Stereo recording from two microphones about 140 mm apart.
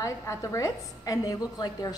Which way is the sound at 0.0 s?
20° left (ahead or behind).